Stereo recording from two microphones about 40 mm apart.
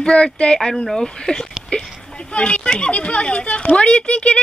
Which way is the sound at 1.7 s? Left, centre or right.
Left.